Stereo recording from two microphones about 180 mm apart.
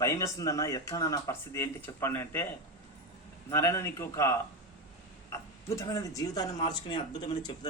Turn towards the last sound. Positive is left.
turn(degrees=25)  # may be behind; listen again after turning